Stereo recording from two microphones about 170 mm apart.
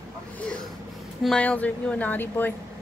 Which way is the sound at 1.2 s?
5° left (ahead or behind).